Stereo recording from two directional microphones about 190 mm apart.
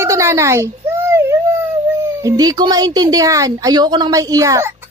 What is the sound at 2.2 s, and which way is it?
A woman's voice, 20° right (ahead or behind).